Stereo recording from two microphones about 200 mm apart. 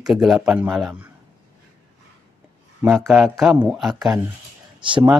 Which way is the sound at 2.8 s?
Centre (ahead or behind).